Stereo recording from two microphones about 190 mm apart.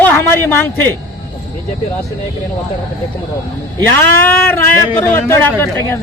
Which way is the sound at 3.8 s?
10° left (ahead or behind).